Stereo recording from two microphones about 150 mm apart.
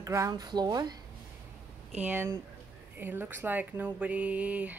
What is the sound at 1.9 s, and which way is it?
Speech, 10° right (ahead or behind).